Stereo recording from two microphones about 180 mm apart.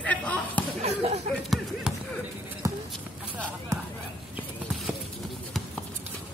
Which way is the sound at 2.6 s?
20° right (ahead or behind).